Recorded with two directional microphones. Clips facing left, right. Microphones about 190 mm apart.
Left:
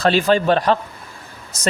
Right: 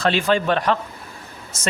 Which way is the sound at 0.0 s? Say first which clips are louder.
Left 3 dB; 35° left (ahead or behind).